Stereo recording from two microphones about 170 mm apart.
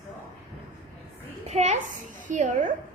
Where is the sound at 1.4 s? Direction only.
40° right (ahead or behind).